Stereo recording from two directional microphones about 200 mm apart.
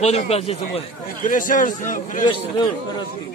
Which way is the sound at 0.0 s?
30° left (ahead or behind).